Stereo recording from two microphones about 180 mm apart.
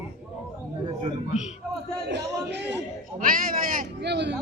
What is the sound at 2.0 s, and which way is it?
Music, 70° right (ahead or behind).